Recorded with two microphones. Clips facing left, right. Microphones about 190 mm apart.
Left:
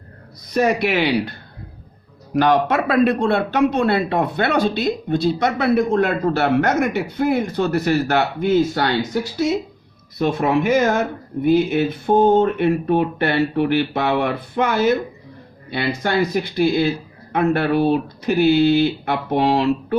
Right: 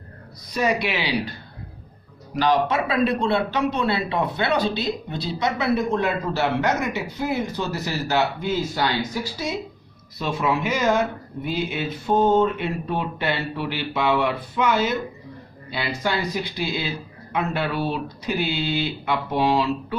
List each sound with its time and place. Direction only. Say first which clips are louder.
0.5 s speech: left 5 dB; 55° left (ahead or behind)
2.3 s speech: left 4 dB; 55° left (ahead or behind)